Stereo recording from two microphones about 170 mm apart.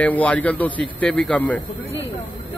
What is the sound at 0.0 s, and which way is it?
A man's voice, 10° left (ahead or behind).